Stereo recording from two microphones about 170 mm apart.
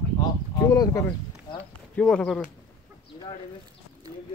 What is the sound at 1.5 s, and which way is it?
Clip-clop, 25° left (ahead or behind).